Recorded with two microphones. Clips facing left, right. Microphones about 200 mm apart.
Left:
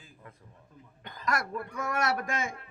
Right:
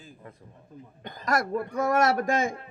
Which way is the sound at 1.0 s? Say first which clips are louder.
Right 5 dB; 45° right (ahead or behind).